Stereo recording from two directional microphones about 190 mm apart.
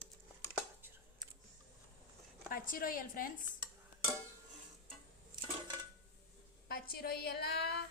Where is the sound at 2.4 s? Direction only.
45° left (ahead or behind).